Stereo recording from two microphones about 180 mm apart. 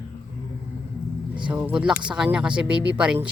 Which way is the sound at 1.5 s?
5° right (ahead or behind).